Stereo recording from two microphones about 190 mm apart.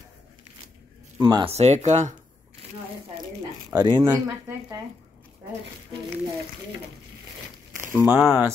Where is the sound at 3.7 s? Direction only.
20° right (ahead or behind).